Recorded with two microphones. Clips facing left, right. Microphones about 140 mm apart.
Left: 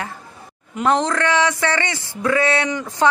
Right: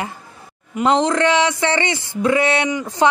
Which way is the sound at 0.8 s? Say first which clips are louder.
Right 3 dB; 20° right (ahead or behind).